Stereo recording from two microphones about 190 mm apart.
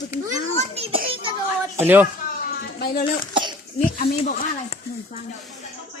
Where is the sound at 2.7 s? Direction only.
50° left (ahead or behind).